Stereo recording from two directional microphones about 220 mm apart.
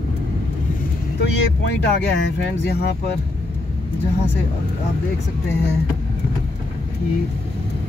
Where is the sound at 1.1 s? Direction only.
50° left (ahead or behind).